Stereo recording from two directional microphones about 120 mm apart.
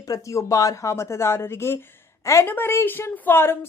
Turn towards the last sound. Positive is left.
turn(degrees=20)  # may be behind; listen again after turning